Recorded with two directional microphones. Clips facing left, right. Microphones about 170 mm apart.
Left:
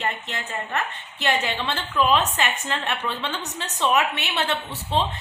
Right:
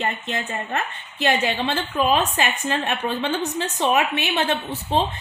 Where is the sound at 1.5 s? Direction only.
50° right (ahead or behind).